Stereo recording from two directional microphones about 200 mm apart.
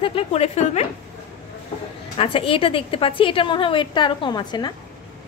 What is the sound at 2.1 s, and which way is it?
A woman's voice, 25° left (ahead or behind).